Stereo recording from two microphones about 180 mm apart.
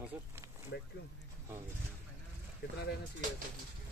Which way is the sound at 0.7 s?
65° left (ahead or behind).